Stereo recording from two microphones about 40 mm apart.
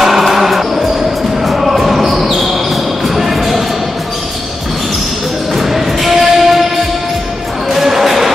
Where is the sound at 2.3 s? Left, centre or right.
Centre.